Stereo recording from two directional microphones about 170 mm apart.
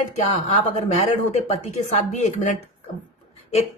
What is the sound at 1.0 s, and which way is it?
Speech, 40° left (ahead or behind).